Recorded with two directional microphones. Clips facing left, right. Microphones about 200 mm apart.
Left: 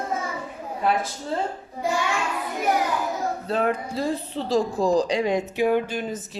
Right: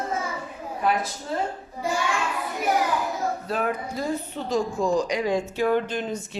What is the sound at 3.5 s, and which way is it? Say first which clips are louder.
Speech: left 3 dB; 25° left (ahead or behind).